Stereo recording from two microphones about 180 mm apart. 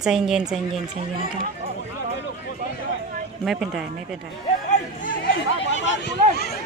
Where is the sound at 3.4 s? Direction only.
Centre (ahead or behind).